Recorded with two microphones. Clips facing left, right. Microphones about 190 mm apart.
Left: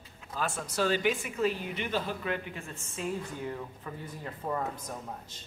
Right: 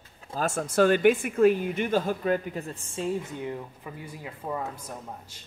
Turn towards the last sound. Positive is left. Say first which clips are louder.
# even
turn(degrees=-10)  # may be behind; listen again after turning